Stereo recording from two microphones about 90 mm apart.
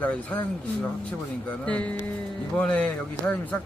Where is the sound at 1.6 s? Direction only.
15° left (ahead or behind).